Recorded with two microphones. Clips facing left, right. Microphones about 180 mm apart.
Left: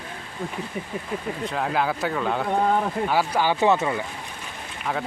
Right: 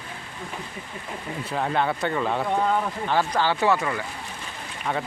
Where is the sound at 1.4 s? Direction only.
Centre (ahead or behind); by 4.0 s 20° left (ahead or behind).